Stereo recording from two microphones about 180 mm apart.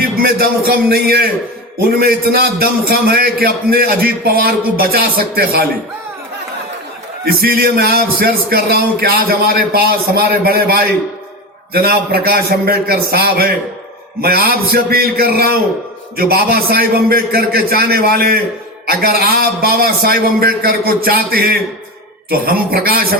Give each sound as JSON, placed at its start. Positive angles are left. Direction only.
{"t": 0.2, "sound": "a man's voice", "side_deg": -60}
{"t": 7.3, "sound": "a man's voice", "side_deg": -55}